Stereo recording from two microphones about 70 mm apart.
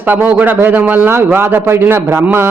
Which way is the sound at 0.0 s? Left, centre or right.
Right.